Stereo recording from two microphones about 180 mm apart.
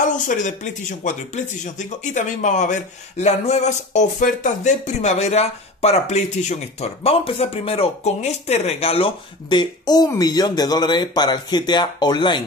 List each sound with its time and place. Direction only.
0.1 s speech: 45° left (ahead or behind); by 12.4 s 25° left (ahead or behind)